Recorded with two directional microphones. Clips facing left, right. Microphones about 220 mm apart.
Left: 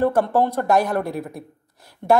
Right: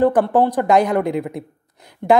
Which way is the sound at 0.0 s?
15° right (ahead or behind).